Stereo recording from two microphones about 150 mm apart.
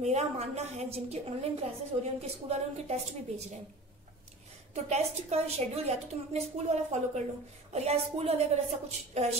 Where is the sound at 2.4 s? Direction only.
45° right (ahead or behind).